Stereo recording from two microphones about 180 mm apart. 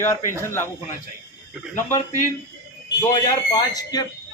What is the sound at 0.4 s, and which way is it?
Speech, 15° left (ahead or behind).